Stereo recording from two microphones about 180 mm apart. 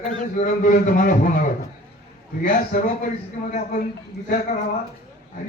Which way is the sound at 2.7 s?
40° left (ahead or behind).